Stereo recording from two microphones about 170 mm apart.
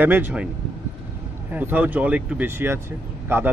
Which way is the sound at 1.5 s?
10° right (ahead or behind).